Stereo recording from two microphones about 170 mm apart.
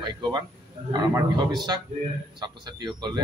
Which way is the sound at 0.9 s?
25° right (ahead or behind).